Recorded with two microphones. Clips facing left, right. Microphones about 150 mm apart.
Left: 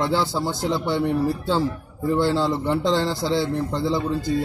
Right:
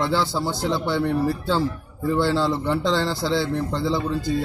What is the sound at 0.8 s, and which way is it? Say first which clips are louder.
Speech: left 1 dB; 20° left (ahead or behind).